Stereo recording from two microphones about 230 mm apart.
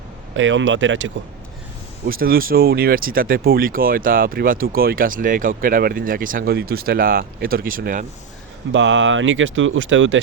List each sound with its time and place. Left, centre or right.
0.3 s speech: right
2.0 s speech: right
8.7 s speech: right